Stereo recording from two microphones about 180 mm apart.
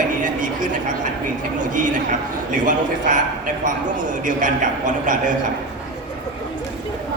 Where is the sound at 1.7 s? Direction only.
45° right (ahead or behind).